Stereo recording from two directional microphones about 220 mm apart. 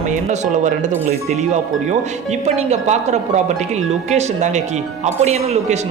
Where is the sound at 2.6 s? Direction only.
30° right (ahead or behind).